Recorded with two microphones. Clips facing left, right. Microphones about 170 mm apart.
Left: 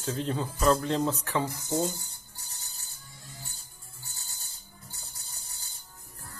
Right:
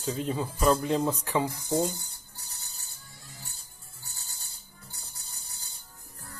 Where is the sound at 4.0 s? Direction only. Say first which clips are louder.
Even; 40° right (ahead or behind).